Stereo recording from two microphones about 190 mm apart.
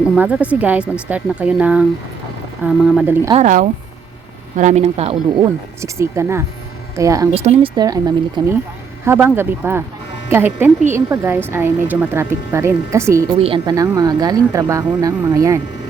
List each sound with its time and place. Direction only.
0.2 s a woman's voice: 10° right (ahead or behind)
3.3 s speech: 40° right (ahead or behind)
5.4 s a woman's voice: 15° right (ahead or behind)
7.3 s speech: 30° right (ahead or behind)
9.0 s a woman's voice: 10° right (ahead or behind)